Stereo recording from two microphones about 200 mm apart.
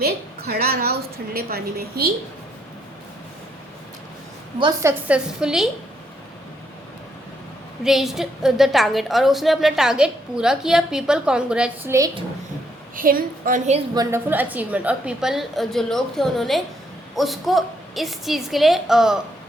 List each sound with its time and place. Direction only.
0.0 s a woman's voice: 50° right (ahead or behind)
4.6 s a woman's voice: 15° right (ahead or behind)
7.9 s a woman's voice: centre (ahead or behind)
11.9 s speech: 20° right (ahead or behind)
13.0 s a woman's voice: 45° right (ahead or behind)
13.9 s a woman's voice: 15° right (ahead or behind)